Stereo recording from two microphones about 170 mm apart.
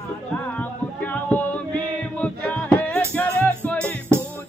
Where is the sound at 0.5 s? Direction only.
10° left (ahead or behind).